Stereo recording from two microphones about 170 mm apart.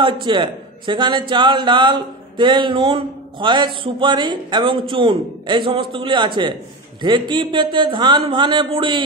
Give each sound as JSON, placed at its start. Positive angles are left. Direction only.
{"t": 0.0, "sound": "a man's voice", "side_deg": -30}